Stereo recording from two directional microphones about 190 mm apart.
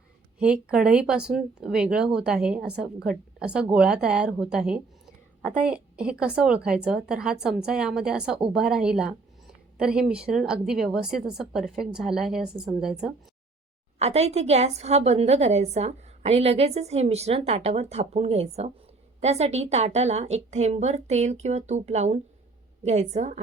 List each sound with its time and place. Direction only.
0.3 s a woman's voice: 5° right (ahead or behind)
14.0 s a woman's voice: 35° right (ahead or behind)